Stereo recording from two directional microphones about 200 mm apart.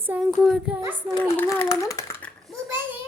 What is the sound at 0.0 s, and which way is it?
Child singing, 10° right (ahead or behind).